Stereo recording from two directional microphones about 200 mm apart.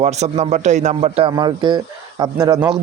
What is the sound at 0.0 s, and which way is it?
A man's voice, 35° right (ahead or behind).